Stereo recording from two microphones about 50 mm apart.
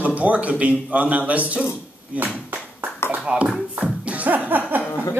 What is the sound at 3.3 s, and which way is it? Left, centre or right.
Speech, right.